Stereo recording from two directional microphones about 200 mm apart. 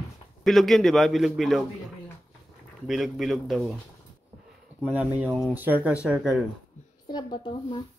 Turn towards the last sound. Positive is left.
turn(degrees=20)  # may be behind; listen again after turning